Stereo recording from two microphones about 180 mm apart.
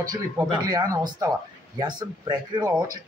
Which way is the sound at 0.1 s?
20° right (ahead or behind).